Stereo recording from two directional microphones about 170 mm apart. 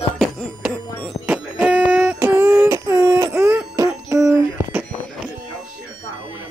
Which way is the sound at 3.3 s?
15° right (ahead or behind).